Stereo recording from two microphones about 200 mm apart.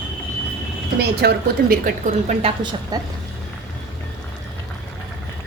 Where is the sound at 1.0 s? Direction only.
50° right (ahead or behind).